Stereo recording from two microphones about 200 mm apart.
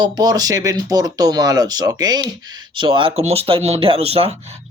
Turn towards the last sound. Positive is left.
turn(degrees=-30)  # may be behind; listen again after turning